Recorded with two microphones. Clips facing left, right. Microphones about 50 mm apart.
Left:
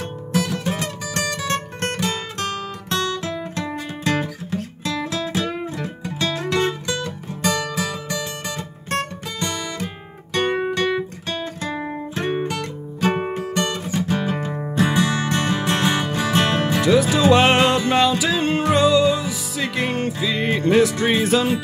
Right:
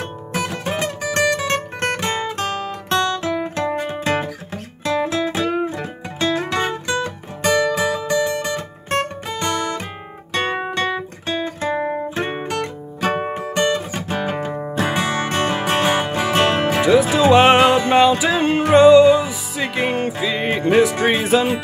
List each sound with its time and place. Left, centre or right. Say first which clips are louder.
0.3 s music: left 1 dB; right
2.3 s music: right 3 dB; centre
3.2 s guitar: right 5 dB; right
6.6 s music: right 2 dB; right
9.4 s music: right 5 dB; right
10.3 s music: left 1 dB; right; by 21.5 s centre